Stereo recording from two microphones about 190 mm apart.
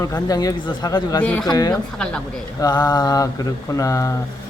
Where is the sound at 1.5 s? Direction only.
20° left (ahead or behind).